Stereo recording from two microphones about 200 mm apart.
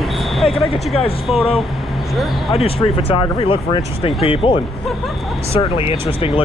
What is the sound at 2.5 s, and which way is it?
Speech, 30° left (ahead or behind).